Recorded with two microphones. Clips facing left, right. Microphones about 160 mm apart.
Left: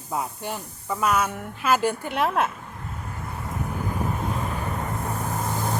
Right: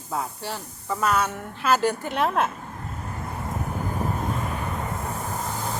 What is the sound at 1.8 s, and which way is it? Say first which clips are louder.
Speech: right 1 dB; 40° right (ahead or behind).